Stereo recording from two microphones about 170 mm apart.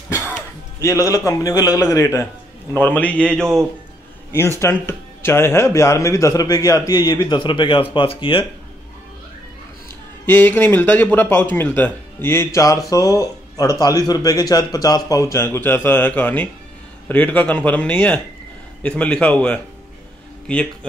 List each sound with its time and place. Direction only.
0.7 s speech: 20° left (ahead or behind)
10.2 s speech: 10° left (ahead or behind)